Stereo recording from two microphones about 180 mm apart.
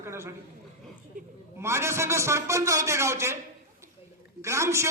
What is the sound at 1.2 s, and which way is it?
Speech, 45° right (ahead or behind).